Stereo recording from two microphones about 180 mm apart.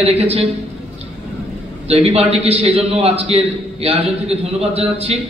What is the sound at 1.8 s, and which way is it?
A man's voice, 35° right (ahead or behind).